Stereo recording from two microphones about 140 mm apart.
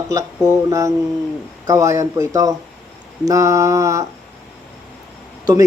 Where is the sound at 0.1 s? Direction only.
25° right (ahead or behind).